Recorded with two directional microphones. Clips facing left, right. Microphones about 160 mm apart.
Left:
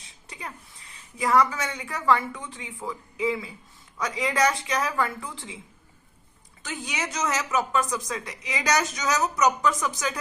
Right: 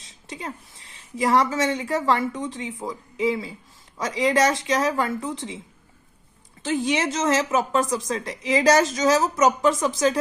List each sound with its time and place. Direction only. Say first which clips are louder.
0.3 s a woman's voice: right 6 dB; 25° right (ahead or behind)
6.7 s a woman's voice: right 10 dB; 25° right (ahead or behind)